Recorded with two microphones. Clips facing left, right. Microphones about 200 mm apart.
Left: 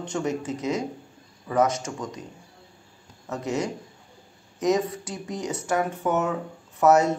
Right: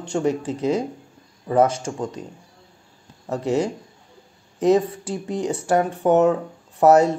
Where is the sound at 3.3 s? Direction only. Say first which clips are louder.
Right 6 dB; 30° right (ahead or behind).